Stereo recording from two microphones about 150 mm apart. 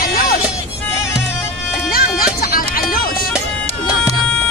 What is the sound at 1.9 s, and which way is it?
Music, 75° left (ahead or behind).